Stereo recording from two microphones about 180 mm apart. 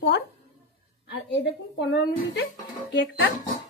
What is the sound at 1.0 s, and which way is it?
Speech, 70° left (ahead or behind).